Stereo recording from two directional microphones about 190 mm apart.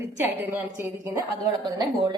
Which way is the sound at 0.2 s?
10° right (ahead or behind).